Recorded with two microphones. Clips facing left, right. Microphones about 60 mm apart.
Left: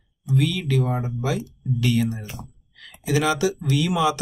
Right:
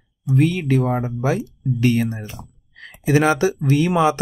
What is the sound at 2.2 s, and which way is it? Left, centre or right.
Speech, centre.